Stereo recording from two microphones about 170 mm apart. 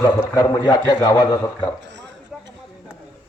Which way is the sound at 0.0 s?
20° left (ahead or behind).